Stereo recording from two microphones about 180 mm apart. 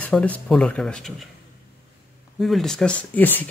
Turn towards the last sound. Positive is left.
turn(degrees=10)  # may be behind; listen again after turning